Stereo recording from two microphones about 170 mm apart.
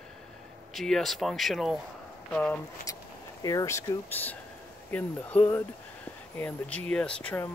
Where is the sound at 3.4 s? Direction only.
20° left (ahead or behind).